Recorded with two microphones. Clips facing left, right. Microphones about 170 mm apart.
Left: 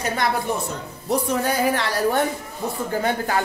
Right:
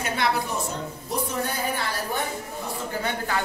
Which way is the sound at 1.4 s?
85° left.